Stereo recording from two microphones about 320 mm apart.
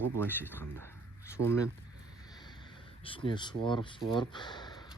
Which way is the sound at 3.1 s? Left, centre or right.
Centre.